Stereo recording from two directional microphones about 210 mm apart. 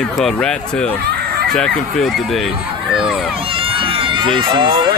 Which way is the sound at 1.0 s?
50° right (ahead or behind).